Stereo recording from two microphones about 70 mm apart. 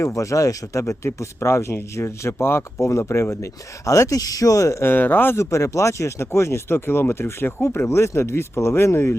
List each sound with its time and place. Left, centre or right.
0.0 s speech: left
4.9 s speech: left
5.4 s speech: left